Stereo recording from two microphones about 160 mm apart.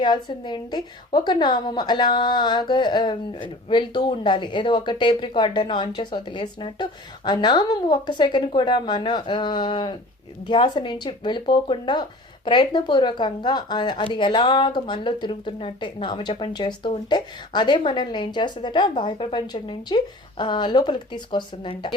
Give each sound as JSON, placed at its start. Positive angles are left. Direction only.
{"t": 0.0, "sound": "a woman's voice", "side_deg": 30}